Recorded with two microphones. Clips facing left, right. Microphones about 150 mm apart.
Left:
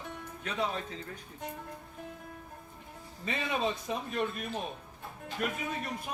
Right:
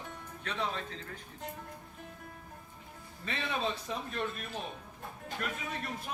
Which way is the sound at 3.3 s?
15° left (ahead or behind).